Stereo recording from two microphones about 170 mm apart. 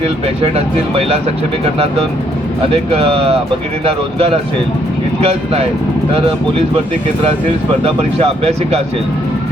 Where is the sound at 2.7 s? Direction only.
35° right (ahead or behind).